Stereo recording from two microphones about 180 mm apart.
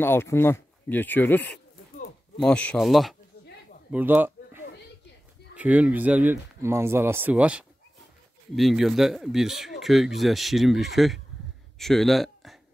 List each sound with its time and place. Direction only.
0.0 s speech: 15° left (ahead or behind)
3.9 s a sound: 10° right (ahead or behind)
5.6 s a man's voice: 10° right (ahead or behind)